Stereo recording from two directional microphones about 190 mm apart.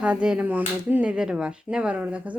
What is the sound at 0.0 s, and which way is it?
Speech, 5° right (ahead or behind).